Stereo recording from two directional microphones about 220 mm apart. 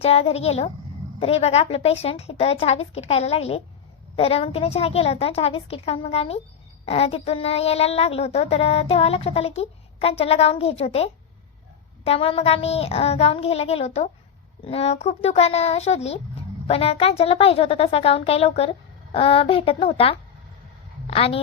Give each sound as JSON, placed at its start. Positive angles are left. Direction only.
{"t": 0.0, "sound": "a woman's voice", "side_deg": 25}